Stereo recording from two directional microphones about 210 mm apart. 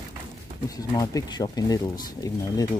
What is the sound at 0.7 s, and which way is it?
Speech, 20° left (ahead or behind).